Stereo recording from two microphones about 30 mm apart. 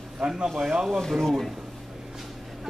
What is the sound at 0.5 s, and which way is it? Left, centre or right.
Speech, centre.